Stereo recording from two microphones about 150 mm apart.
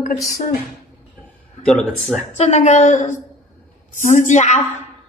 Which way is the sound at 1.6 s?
5° left (ahead or behind).